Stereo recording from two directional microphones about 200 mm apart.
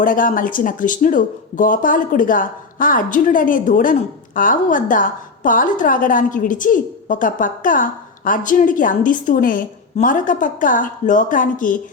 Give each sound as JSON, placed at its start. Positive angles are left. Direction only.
{"t": 0.0, "sound": "a woman's voice", "side_deg": 45}